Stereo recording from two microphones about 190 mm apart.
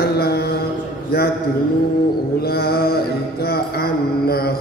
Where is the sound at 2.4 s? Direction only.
55° left (ahead or behind).